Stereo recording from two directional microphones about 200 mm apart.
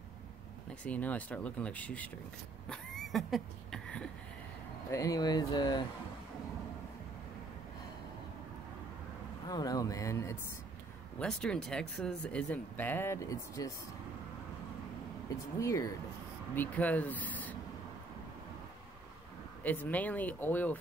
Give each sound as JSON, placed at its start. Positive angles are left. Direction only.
{"t": 0.8, "sound": "speech", "side_deg": 10}
{"t": 2.7, "sound": "a sound", "side_deg": 0}
{"t": 4.9, "sound": "speech", "side_deg": 15}
{"t": 9.5, "sound": "speech", "side_deg": 20}
{"t": 11.1, "sound": "speech", "side_deg": 5}
{"t": 15.6, "sound": "speech", "side_deg": 15}
{"t": 19.6, "sound": "speech", "side_deg": 10}